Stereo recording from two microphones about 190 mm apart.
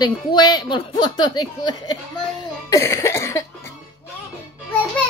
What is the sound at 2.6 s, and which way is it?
Cough, 15° left (ahead or behind).